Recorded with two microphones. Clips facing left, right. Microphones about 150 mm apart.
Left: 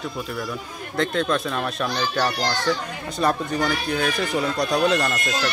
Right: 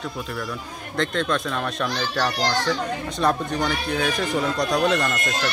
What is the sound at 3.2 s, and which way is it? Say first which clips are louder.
Speech: left 1 dB; centre (ahead or behind).